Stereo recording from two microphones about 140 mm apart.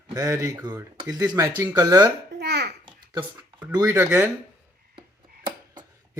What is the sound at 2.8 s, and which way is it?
Babbling, 35° right (ahead or behind).